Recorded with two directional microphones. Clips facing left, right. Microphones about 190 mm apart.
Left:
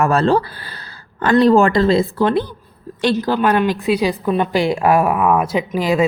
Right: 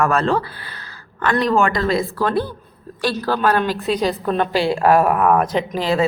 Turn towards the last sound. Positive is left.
turn(degrees=15)  # may be behind; listen again after turning